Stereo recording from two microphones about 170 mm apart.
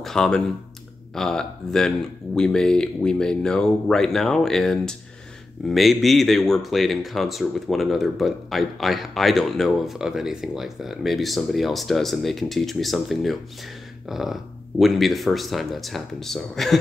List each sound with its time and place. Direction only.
0.0 s speech: 5° left (ahead or behind)